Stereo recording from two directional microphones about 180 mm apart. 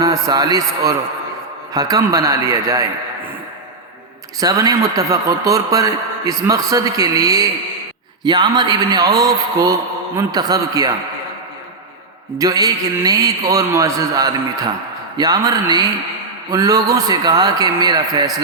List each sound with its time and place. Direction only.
0.0 s a man's voice: 20° right (ahead or behind)
4.4 s a man's voice: 20° right (ahead or behind)
12.4 s a man's voice: 20° right (ahead or behind)